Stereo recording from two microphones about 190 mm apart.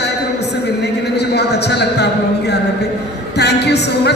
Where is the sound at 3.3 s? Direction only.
60° left (ahead or behind).